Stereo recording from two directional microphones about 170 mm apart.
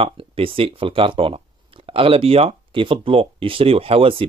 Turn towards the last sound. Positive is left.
turn(degrees=-35)  # may be behind; listen again after turning